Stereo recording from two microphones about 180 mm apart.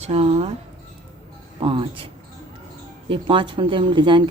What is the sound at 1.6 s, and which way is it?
Speech, 30° right (ahead or behind).